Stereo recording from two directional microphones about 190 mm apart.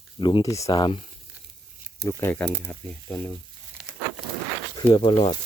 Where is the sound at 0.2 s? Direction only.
25° left (ahead or behind).